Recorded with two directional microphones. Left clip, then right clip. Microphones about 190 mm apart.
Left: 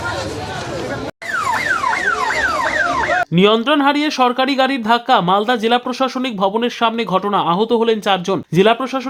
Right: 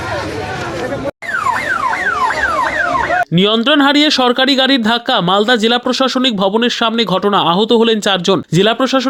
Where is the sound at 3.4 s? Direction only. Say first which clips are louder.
Right 2 dB; 20° right (ahead or behind).